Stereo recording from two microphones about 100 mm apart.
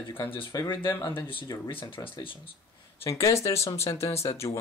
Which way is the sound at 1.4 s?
40° left (ahead or behind).